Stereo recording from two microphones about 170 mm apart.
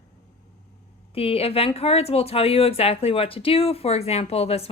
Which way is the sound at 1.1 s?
35° left (ahead or behind).